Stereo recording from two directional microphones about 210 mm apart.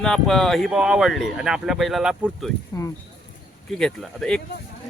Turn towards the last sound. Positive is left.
turn(degrees=5)  # may be behind; listen again after turning